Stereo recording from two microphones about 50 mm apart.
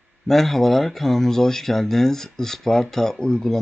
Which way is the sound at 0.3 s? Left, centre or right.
Centre.